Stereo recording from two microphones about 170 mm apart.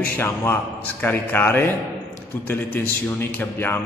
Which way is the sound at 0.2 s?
10° left (ahead or behind).